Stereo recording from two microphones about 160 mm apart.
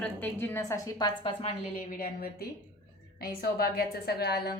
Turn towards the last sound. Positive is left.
turn(degrees=80)